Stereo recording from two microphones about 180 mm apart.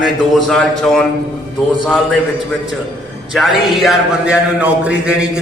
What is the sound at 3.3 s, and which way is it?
A man's voice, centre (ahead or behind).